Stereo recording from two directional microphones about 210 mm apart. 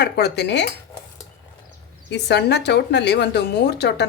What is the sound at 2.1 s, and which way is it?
A woman's voice, 55° left (ahead or behind).